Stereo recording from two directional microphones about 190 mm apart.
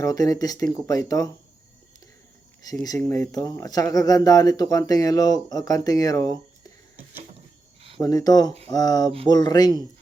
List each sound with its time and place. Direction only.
0.0 s speech: 20° left (ahead or behind)
2.8 s speech: 15° left (ahead or behind)
7.9 s speech: 20° left (ahead or behind)